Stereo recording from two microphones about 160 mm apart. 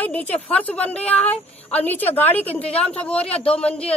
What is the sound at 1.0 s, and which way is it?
Speech, 40° left (ahead or behind).